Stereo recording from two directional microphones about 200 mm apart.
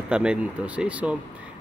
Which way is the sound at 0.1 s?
5° right (ahead or behind).